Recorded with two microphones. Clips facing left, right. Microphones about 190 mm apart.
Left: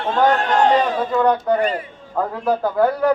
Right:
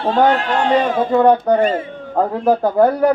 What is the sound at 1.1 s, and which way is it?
Speech, 35° right (ahead or behind).